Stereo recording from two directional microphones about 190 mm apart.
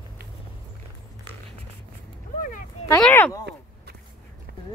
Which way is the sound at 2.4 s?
45° left (ahead or behind).